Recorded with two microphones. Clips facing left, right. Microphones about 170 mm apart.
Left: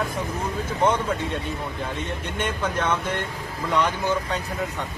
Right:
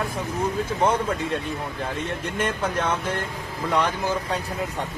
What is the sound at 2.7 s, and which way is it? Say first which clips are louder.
Speech: even; 30° right (ahead or behind).